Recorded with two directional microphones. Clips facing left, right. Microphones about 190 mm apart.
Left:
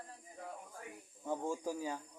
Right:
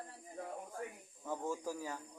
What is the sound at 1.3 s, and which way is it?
Speech, 25° left (ahead or behind).